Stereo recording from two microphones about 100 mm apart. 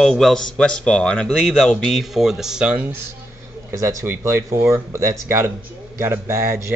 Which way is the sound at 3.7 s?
25° right (ahead or behind).